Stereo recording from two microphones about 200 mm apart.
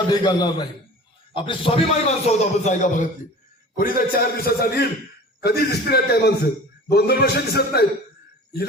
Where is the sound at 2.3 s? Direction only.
35° left (ahead or behind).